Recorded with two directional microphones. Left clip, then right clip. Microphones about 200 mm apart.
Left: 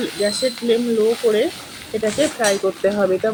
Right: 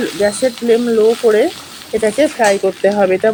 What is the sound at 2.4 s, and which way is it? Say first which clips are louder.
Speech: right 6 dB; 30° right (ahead or behind).